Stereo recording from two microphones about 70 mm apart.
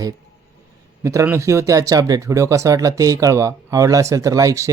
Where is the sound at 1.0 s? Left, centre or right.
Right.